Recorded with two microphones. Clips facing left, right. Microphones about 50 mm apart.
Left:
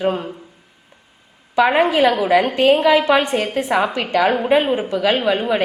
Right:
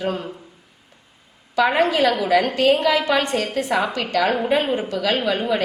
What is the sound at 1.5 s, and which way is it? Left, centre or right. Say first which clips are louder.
A woman's voice: left 3 dB; centre.